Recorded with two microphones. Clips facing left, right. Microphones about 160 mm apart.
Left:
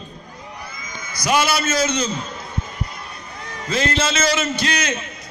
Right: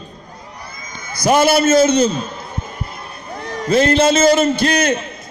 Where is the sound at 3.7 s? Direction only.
55° right (ahead or behind).